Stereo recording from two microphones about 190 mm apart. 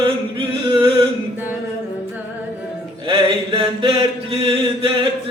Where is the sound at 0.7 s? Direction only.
25° right (ahead or behind).